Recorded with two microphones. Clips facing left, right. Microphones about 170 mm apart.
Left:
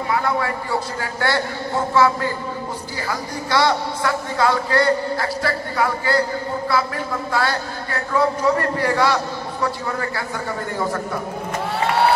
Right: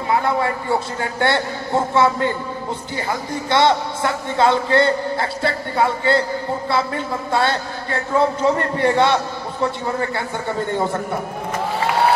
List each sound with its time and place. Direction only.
0.1 s a man's voice: 25° right (ahead or behind)